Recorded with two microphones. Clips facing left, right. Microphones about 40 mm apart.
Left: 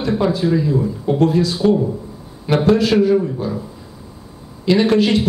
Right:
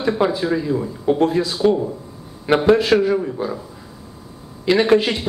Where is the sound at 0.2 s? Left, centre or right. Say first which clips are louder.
Left 2 dB; centre.